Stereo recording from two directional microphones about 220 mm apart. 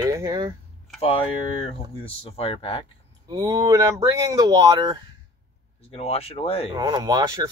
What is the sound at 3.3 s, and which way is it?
Speech, 20° right (ahead or behind).